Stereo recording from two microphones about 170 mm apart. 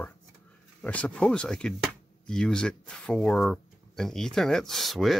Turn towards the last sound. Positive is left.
turn(degrees=0)  # may be behind; listen again after turning